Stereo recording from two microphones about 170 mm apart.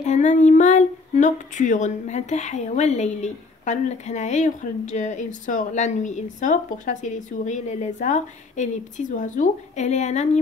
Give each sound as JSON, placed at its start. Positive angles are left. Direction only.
{"t": 0.0, "sound": "child singing", "side_deg": 45}